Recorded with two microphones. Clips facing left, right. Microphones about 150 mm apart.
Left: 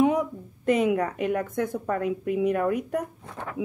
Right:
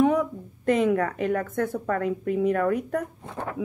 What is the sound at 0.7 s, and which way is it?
A woman's voice, 10° left (ahead or behind).